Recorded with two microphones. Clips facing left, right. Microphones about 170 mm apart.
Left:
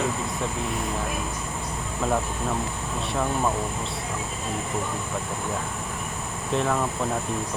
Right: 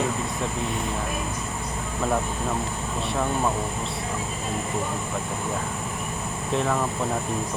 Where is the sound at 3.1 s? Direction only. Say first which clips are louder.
Even; centre (ahead or behind).